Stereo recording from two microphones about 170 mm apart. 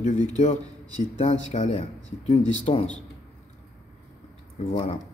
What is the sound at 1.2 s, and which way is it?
Speech, 45° left (ahead or behind).